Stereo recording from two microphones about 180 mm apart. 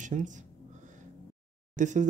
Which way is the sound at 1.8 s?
45° right (ahead or behind).